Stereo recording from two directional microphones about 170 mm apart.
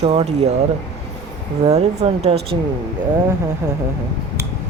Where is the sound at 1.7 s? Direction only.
40° right (ahead or behind).